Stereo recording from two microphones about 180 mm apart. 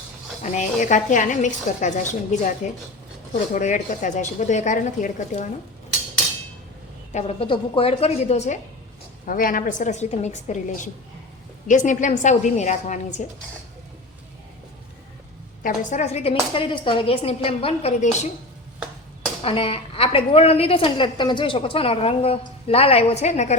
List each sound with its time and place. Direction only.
0.4 s a woman's voice: 40° left (ahead or behind)
7.1 s a woman's voice: 35° left (ahead or behind)
9.2 s a woman's voice: 50° left (ahead or behind)
15.6 s a woman's voice: 40° left (ahead or behind)
19.4 s a woman's voice: 30° left (ahead or behind)